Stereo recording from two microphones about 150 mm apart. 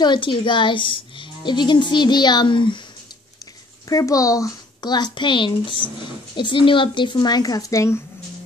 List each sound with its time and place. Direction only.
0.0 s a woman's voice: 30° left (ahead or behind)
3.9 s a woman's voice: 20° left (ahead or behind)